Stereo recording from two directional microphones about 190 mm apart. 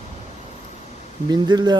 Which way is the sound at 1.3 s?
20° right (ahead or behind).